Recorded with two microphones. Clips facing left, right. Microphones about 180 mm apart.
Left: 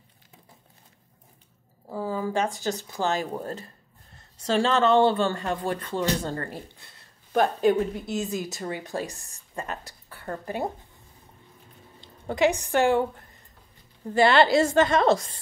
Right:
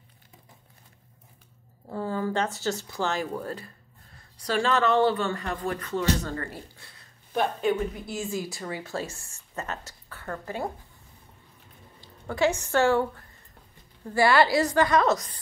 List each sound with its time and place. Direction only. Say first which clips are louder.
1.9 s speech: even; 10° left (ahead or behind); by 6.9 s 25° left (ahead or behind)
8.1 s speech: left 2 dB; 20° left (ahead or behind)
9.7 s a sound: left 1 dB; 15° left (ahead or behind)
10.2 s speech: left 2 dB; 20° left (ahead or behind)
12.0 s a woman's voice: left 2 dB; 20° left (ahead or behind)